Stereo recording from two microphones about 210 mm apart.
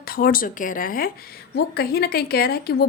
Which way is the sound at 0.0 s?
45° left (ahead or behind).